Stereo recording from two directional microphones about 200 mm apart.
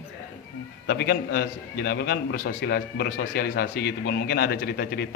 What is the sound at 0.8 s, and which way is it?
A man's voice, 55° left (ahead or behind).